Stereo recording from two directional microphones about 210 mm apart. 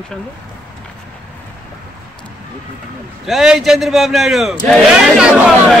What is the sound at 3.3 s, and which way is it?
A man's voice, centre (ahead or behind).